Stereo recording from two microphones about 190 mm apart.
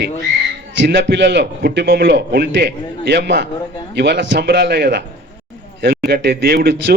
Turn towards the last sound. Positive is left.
turn(degrees=-55)  # may be behind; listen again after turning